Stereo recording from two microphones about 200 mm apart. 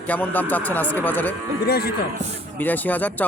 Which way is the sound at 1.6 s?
50° left (ahead or behind).